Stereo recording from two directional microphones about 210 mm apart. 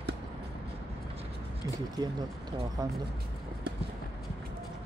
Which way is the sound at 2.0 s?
20° right (ahead or behind).